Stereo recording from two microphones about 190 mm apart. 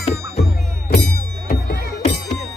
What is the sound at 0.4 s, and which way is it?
Music, 60° left (ahead or behind).